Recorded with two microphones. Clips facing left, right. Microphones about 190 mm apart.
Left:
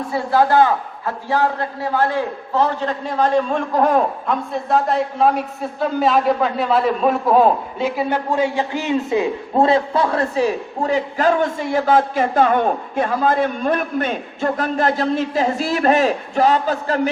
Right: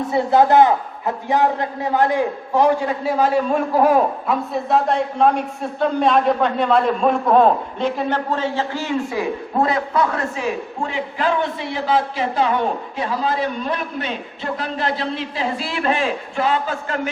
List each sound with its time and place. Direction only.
0.1 s a man's voice: 20° right (ahead or behind); by 17.1 s 35° left (ahead or behind)